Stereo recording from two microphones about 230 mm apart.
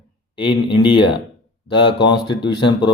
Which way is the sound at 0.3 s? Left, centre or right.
Left.